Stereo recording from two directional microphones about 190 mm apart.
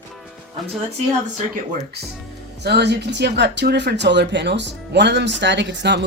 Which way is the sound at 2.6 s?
60° right (ahead or behind).